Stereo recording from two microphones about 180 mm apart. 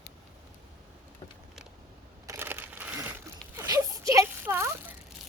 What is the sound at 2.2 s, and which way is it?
Crumpling, 15° right (ahead or behind).